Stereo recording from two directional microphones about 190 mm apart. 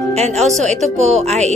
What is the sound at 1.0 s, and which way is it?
Speech, 35° right (ahead or behind).